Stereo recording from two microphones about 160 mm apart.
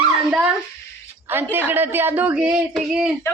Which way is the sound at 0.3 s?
5° right (ahead or behind).